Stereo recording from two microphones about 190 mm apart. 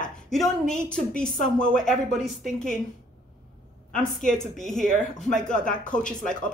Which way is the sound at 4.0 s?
5° left (ahead or behind).